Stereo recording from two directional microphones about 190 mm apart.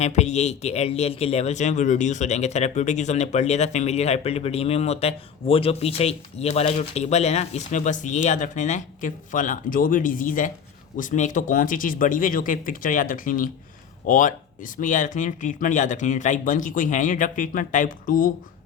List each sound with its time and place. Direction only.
0.0 s speech: 35° left (ahead or behind)